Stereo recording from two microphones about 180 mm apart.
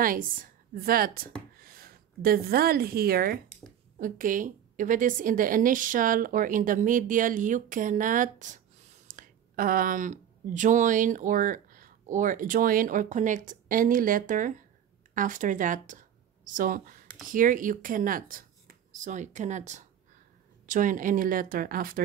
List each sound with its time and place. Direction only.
0.0 s a woman's voice: 50° right (ahead or behind)